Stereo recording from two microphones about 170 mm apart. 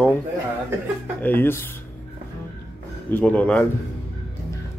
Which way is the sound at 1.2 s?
10° left (ahead or behind).